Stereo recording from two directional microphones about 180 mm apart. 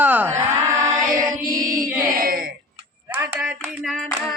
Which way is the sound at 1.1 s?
45° right (ahead or behind).